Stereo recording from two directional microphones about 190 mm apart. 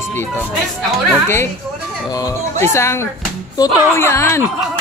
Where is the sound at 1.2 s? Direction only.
10° left (ahead or behind).